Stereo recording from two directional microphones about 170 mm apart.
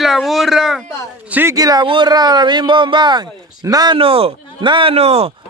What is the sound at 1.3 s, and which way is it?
A man's voice, 15° right (ahead or behind).